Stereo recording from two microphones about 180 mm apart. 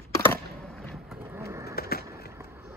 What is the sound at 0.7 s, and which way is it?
Vehicle, centre (ahead or behind).